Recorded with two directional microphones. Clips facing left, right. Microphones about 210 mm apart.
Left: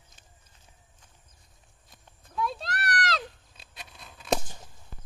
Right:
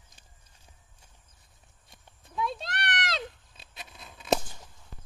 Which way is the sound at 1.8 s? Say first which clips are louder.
Even; centre (ahead or behind).